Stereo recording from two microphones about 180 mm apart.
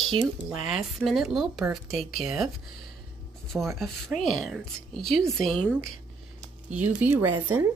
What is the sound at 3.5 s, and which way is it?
Speech, centre (ahead or behind).